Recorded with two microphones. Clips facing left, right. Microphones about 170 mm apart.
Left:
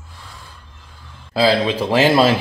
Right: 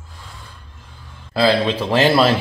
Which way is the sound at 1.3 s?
15° left (ahead or behind).